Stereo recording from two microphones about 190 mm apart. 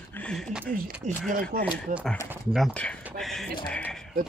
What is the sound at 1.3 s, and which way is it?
Speech, 50° right (ahead or behind).